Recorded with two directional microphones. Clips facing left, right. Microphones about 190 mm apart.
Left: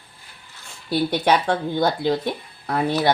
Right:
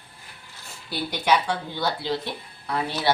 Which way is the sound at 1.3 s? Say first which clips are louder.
Left 1 dB; 50° left (ahead or behind).